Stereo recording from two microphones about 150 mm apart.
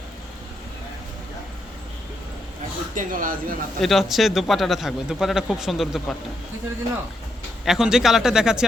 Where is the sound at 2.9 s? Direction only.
60° right (ahead or behind).